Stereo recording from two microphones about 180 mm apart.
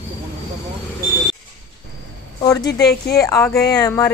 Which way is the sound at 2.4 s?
20° left (ahead or behind).